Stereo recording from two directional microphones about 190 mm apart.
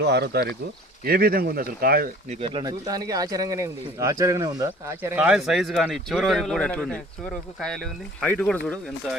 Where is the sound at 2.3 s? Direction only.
30° right (ahead or behind); by 8.8 s 5° left (ahead or behind).